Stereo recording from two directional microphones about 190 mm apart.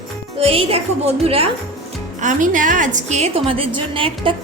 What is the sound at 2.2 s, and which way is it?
A woman's voice, 45° right (ahead or behind).